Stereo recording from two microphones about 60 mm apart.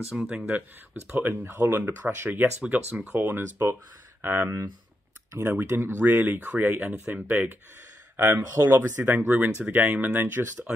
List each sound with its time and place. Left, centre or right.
0.3 s speech: right
1.1 s speech: right
8.3 s speech: right
9.0 s speech: right